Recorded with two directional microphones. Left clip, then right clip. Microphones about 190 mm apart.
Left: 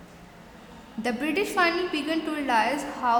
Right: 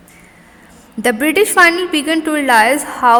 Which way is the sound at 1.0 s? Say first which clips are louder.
Right 14 dB; 45° right (ahead or behind).